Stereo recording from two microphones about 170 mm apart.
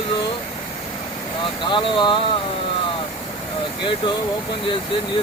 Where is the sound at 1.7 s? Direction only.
30° left (ahead or behind).